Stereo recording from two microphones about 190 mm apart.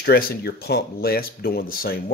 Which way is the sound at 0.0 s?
55° left (ahead or behind).